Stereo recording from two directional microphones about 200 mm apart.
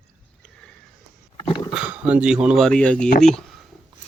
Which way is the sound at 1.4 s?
20° left (ahead or behind).